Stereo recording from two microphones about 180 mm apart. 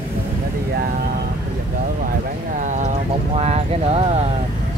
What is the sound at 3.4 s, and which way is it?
Clip-clop, 35° right (ahead or behind).